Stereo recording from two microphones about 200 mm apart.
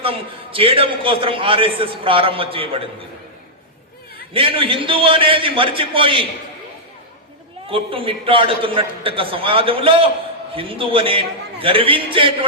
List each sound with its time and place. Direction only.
0.0 s a man's voice: 25° right (ahead or behind)
4.4 s a man's voice: 25° right (ahead or behind)
7.7 s a man's voice: 25° right (ahead or behind)